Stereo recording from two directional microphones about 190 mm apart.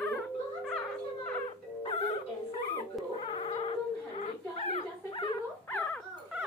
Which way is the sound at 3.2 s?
30° left (ahead or behind).